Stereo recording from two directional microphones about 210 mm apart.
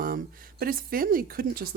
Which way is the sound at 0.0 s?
45° right (ahead or behind).